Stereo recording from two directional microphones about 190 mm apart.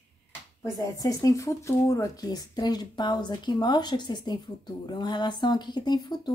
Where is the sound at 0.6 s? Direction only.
20° left (ahead or behind).